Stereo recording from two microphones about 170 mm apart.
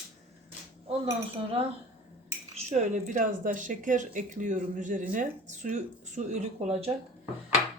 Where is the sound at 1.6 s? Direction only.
35° right (ahead or behind).